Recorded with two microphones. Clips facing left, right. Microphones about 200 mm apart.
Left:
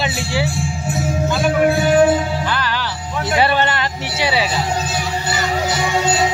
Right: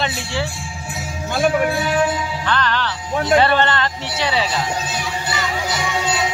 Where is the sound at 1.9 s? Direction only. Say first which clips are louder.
Left 6 dB; 50° left (ahead or behind).